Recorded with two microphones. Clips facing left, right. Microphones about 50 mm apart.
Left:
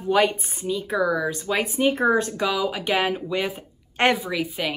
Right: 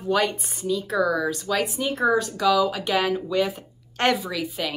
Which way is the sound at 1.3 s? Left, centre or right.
Left.